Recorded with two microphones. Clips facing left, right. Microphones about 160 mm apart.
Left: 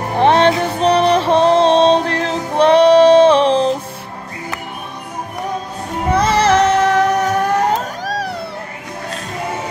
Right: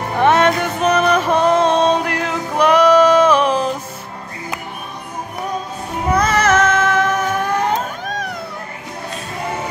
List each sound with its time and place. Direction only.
0.1 s music: 30° left (ahead or behind)
6.1 s music: 30° left (ahead or behind)